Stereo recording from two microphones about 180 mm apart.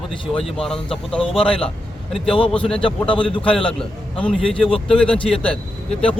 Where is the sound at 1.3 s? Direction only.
30° left (ahead or behind).